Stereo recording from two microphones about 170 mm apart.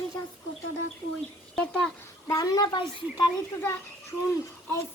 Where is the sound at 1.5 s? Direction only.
5° left (ahead or behind).